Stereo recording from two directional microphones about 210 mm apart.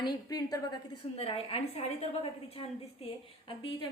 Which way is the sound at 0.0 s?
20° left (ahead or behind).